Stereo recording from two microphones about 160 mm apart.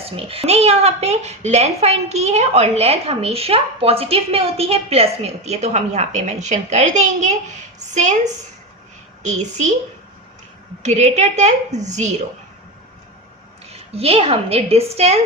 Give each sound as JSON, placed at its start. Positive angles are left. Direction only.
{"t": 0.2, "sound": "a woman's voice", "side_deg": -35}
{"t": 10.8, "sound": "a woman's voice", "side_deg": -45}
{"t": 13.9, "sound": "a woman's voice", "side_deg": -35}